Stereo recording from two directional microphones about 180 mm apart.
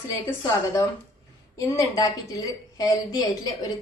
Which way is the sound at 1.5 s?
20° left (ahead or behind).